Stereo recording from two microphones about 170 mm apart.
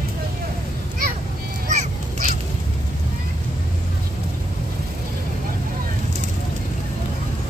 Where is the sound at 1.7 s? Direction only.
45° right (ahead or behind).